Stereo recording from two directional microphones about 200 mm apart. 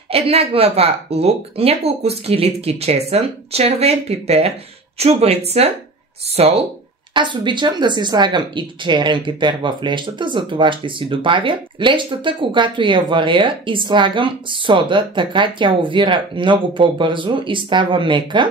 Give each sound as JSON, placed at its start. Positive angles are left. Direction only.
{"t": 0.1, "sound": "speech", "side_deg": -30}